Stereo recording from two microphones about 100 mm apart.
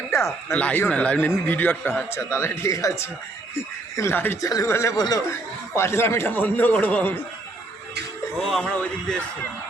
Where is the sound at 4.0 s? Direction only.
20° left (ahead or behind).